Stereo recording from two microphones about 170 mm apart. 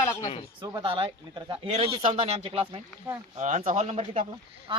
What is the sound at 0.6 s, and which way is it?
Speech, 30° right (ahead or behind).